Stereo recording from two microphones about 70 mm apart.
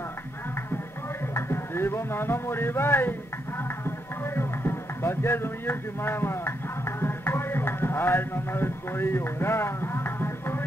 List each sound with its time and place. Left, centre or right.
1.3 s music: left